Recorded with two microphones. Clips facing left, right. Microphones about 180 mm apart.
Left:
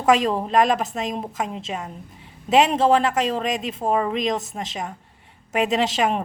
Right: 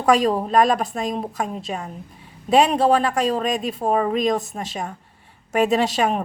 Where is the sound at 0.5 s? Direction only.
20° left (ahead or behind).